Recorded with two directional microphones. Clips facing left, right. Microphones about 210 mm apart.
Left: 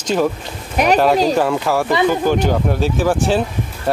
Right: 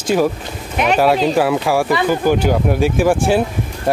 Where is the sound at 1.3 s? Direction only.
10° right (ahead or behind).